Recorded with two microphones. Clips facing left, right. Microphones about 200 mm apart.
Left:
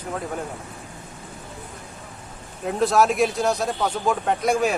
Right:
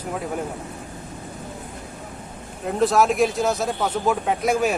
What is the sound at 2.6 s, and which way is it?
Speech, centre (ahead or behind).